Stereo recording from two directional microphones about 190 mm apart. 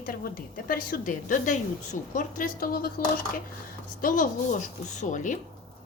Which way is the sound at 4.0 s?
45° left (ahead or behind).